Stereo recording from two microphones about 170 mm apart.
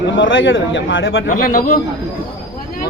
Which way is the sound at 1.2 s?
55° left (ahead or behind).